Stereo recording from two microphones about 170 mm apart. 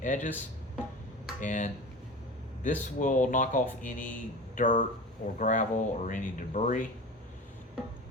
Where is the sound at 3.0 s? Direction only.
50° left (ahead or behind).